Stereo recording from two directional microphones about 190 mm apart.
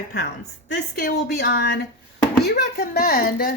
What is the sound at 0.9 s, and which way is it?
Speech, 50° left (ahead or behind).